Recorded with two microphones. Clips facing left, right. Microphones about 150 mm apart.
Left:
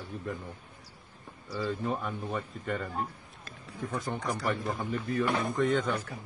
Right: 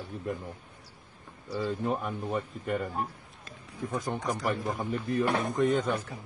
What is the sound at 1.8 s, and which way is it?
Speech, 10° right (ahead or behind).